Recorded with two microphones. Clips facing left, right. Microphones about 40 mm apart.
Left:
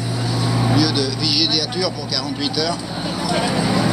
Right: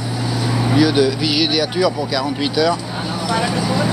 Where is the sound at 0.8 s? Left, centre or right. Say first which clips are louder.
Right 5 dB; right.